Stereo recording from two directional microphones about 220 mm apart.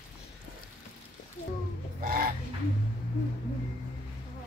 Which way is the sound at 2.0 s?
40° right (ahead or behind).